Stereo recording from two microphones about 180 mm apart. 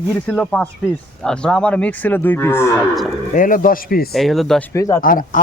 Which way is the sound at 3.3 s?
50° left (ahead or behind).